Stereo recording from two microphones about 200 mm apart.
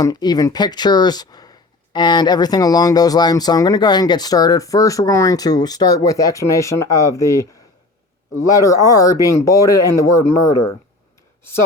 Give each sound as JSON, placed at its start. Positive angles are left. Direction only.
{"t": 0.0, "sound": "speech", "side_deg": 20}